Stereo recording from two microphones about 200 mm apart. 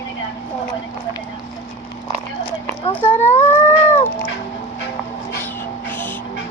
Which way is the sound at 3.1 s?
10° left (ahead or behind).